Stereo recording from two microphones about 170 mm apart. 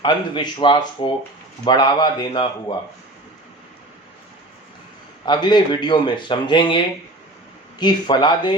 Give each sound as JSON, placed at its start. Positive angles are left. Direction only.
{"t": 0.0, "sound": "speech", "side_deg": 30}
{"t": 5.2, "sound": "speech", "side_deg": 25}